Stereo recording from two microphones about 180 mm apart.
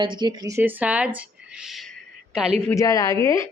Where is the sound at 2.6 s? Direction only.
15° left (ahead or behind).